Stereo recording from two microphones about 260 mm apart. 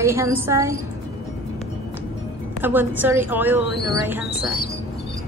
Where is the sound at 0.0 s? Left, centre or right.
Centre.